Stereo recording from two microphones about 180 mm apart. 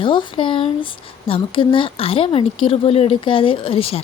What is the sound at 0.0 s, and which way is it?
A woman's voice, 25° left (ahead or behind).